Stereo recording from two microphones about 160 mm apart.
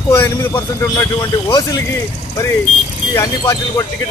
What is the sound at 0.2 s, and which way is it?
Speech, 20° left (ahead or behind).